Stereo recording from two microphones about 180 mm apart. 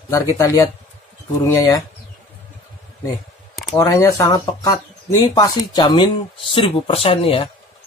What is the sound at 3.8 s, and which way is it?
Speech, 20° left (ahead or behind).